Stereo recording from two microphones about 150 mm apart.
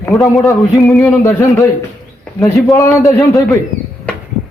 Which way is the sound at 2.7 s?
20° left (ahead or behind).